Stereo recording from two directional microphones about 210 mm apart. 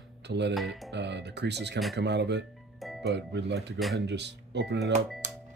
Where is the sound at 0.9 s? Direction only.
55° right (ahead or behind).